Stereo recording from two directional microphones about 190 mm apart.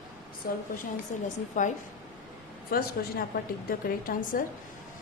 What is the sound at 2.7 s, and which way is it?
Speech, 55° left (ahead or behind).